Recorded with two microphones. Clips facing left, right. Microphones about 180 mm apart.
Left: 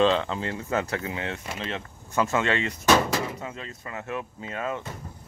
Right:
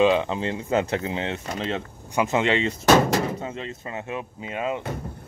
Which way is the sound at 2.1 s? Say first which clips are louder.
Right 3 dB; 20° right (ahead or behind).